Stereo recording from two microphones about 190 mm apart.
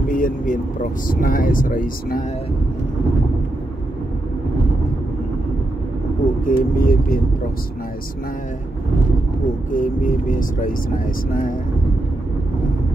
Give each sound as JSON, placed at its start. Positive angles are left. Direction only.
{"t": 0.1, "sound": "speech", "side_deg": 45}
{"t": 6.4, "sound": "speech", "side_deg": 50}
{"t": 9.7, "sound": "speech", "side_deg": 45}